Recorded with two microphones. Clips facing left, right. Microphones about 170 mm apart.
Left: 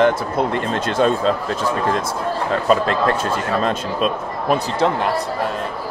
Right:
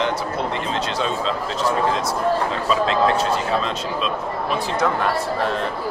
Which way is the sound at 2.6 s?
50° left (ahead or behind).